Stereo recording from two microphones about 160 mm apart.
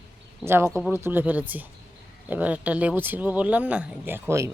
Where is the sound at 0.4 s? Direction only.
15° right (ahead or behind).